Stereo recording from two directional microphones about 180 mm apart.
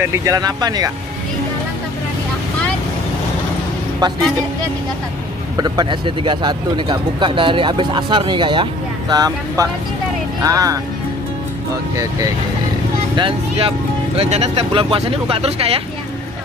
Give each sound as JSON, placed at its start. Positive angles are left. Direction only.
{"t": 0.0, "sound": "speech", "side_deg": -15}
{"t": 4.0, "sound": "speech", "side_deg": -25}
{"t": 5.6, "sound": "speech", "side_deg": -25}
{"t": 13.1, "sound": "speech", "side_deg": -30}